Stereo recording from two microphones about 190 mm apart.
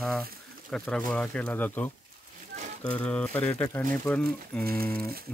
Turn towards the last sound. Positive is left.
turn(degrees=-50)  # may be behind; listen again after turning